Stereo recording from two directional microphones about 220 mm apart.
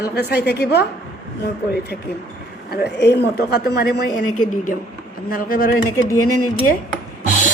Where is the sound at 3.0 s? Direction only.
50° left (ahead or behind).